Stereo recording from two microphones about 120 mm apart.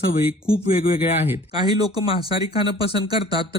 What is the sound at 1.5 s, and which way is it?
Speech, 35° right (ahead or behind).